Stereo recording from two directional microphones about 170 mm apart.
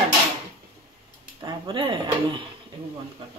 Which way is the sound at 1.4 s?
30° right (ahead or behind).